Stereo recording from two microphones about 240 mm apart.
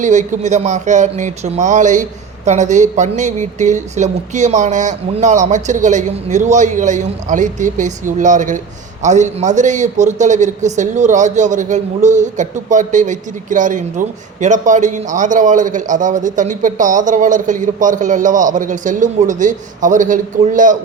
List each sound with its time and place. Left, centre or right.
0.0 s speech: right